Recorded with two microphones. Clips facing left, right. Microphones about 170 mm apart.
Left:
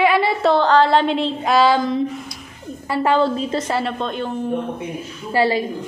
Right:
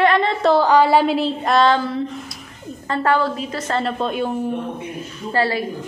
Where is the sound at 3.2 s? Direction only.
25° left (ahead or behind).